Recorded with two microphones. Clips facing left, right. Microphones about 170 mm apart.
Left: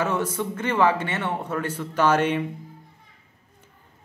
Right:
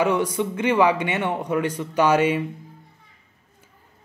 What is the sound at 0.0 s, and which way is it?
A man's voice, 15° right (ahead or behind).